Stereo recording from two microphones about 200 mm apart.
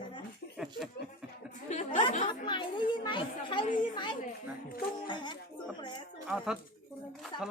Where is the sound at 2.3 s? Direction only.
25° left (ahead or behind).